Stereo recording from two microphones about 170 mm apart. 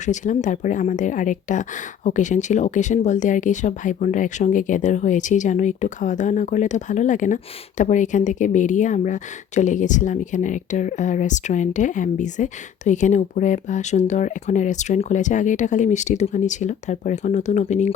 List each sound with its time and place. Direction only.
0.0 s speech: 45° left (ahead or behind)